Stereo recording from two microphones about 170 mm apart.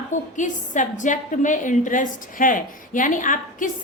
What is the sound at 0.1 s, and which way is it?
A woman's voice, 45° left (ahead or behind).